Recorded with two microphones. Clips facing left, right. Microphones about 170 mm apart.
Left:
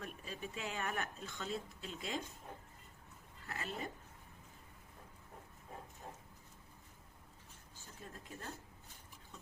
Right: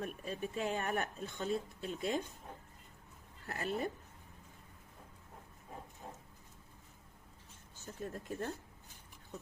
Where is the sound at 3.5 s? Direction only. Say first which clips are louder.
Right 6 dB; 45° right (ahead or behind).